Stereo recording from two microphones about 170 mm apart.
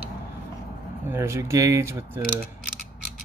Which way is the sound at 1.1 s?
15° right (ahead or behind).